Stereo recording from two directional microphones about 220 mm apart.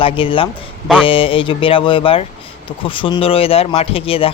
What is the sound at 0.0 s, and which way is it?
Speech, 25° left (ahead or behind).